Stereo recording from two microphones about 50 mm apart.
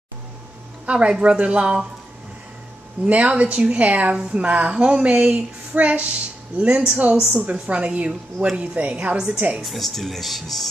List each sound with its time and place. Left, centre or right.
0.8 s a woman's voice: right
3.1 s a woman's voice: right
5.7 s music: right
6.5 s a woman's voice: right
9.6 s speech: centre